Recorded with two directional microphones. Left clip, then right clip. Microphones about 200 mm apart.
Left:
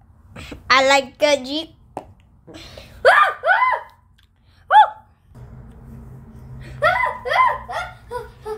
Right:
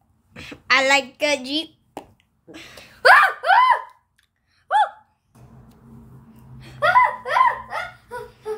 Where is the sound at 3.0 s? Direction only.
40° right (ahead or behind).